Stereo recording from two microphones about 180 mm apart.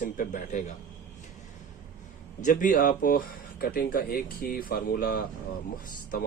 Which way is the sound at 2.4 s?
45° left (ahead or behind).